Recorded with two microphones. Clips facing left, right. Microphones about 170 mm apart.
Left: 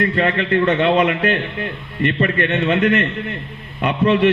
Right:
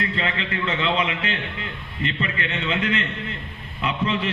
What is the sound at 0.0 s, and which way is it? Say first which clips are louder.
A man's voice: left 8 dB; 50° left (ahead or behind).